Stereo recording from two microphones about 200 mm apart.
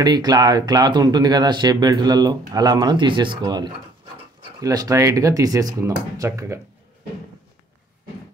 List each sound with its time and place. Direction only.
0.0 s speech: 20° right (ahead or behind)